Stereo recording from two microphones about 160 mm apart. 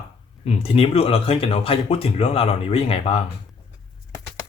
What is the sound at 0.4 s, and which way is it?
Speech, 40° left (ahead or behind).